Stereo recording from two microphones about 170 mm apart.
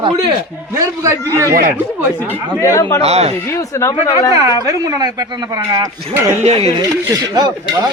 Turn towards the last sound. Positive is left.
turn(degrees=-25)  # may be behind; listen again after turning